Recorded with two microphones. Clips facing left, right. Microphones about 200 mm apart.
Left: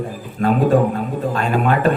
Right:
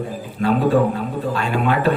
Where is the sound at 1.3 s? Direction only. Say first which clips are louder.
Left 2 dB; 45° left (ahead or behind).